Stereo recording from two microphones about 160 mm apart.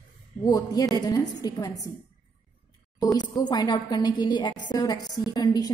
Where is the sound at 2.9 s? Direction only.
25° left (ahead or behind).